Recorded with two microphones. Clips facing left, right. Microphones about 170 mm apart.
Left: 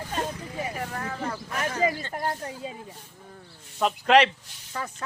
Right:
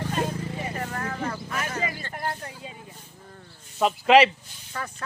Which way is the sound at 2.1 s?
35° left (ahead or behind).